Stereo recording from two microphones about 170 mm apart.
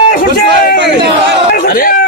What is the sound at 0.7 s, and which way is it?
Speech, 90° right.